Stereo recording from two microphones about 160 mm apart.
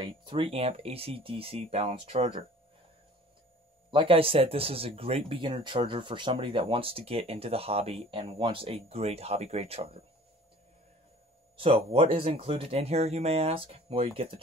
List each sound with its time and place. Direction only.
0.0 s speech: 30° right (ahead or behind)
3.9 s speech: 35° right (ahead or behind)
11.5 s speech: 35° right (ahead or behind)